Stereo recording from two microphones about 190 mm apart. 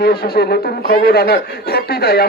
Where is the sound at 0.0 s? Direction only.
55° left (ahead or behind).